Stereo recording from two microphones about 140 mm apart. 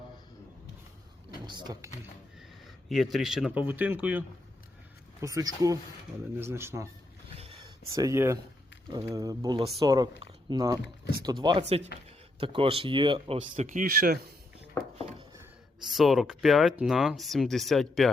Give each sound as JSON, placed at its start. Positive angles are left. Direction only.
{"t": 1.5, "sound": "speech", "side_deg": -30}
{"t": 2.6, "sound": "speech", "side_deg": 0}
{"t": 5.2, "sound": "speech", "side_deg": -25}
{"t": 7.3, "sound": "a sound", "side_deg": -45}
{"t": 7.9, "sound": "speech", "side_deg": -20}
{"t": 15.9, "sound": "speech", "side_deg": 0}